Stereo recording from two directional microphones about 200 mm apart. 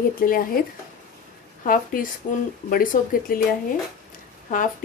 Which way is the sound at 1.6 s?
45° left (ahead or behind).